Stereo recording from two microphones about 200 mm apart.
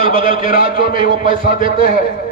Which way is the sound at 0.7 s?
45° left (ahead or behind).